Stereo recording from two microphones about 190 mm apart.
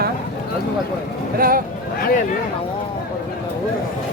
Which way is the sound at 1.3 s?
50° right (ahead or behind).